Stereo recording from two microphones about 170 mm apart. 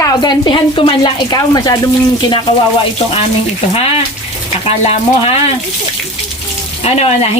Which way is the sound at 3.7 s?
35° left (ahead or behind).